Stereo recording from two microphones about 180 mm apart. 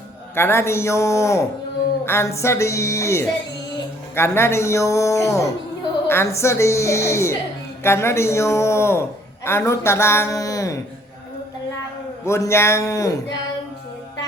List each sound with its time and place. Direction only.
0.3 s a man's voice: 15° left (ahead or behind)
12.2 s a man's voice: 15° left (ahead or behind)